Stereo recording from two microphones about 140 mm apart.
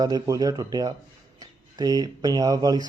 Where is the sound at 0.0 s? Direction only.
30° right (ahead or behind).